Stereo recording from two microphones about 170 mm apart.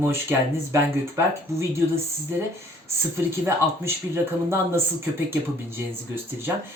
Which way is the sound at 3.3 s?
15° right (ahead or behind).